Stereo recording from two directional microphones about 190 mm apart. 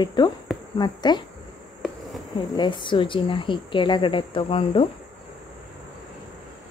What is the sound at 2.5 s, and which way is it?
Speech, 25° left (ahead or behind).